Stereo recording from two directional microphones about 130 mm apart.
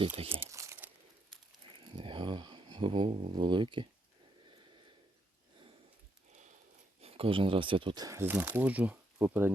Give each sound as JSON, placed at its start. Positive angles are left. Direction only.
{"t": 0.3, "sound": "crumpling", "side_deg": -20}
{"t": 1.7, "sound": "a sound", "side_deg": -40}
{"t": 7.0, "sound": "speech", "side_deg": -45}
{"t": 8.0, "sound": "speech", "side_deg": -20}